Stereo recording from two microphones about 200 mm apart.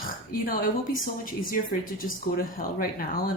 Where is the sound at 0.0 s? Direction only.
45° left (ahead or behind).